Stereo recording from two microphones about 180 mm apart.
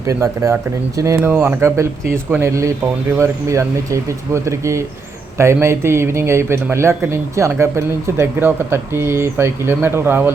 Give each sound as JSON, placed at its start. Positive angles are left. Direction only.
{"t": 0.0, "sound": "speech", "side_deg": -15}